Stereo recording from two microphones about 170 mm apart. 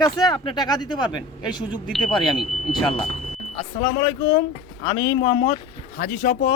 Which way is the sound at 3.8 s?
35° left (ahead or behind).